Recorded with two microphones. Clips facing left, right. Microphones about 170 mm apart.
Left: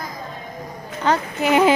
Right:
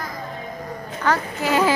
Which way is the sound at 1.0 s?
20° left (ahead or behind).